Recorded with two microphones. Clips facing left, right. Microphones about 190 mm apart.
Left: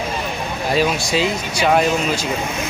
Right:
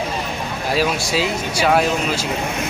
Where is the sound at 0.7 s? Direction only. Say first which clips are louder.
Left 1 dB; 5° right (ahead or behind).